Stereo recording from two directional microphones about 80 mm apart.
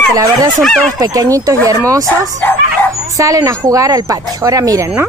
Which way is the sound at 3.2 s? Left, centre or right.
Right.